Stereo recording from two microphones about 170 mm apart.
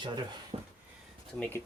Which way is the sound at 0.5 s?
35° right (ahead or behind).